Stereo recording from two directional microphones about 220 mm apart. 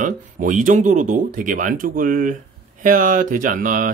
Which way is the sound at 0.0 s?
35° right (ahead or behind).